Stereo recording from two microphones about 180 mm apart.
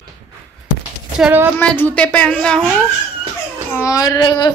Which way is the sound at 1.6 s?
10° left (ahead or behind).